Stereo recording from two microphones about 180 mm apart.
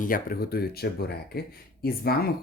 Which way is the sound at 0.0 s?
50° left (ahead or behind).